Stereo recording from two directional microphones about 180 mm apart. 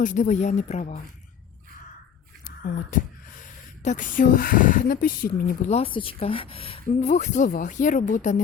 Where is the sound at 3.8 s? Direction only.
45° left (ahead or behind).